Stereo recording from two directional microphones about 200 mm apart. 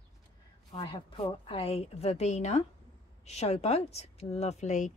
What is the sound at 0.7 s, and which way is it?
A woman's voice, 25° left (ahead or behind).